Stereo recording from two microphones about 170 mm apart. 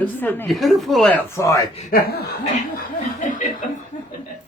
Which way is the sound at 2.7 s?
50° left (ahead or behind).